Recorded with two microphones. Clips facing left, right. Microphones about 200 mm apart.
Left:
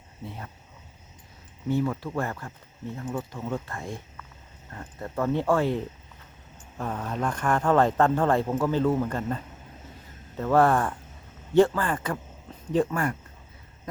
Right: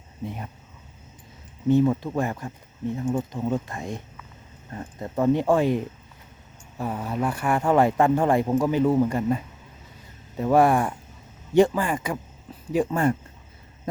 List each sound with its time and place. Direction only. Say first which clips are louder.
0.3 s speech: right 4 dB; 15° right (ahead or behind)
1.6 s speech: right 7 dB; 20° right (ahead or behind)
12.9 s speech: right 6 dB; 25° right (ahead or behind)